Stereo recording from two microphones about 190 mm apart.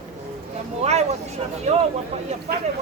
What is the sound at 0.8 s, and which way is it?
Speech, 35° right (ahead or behind).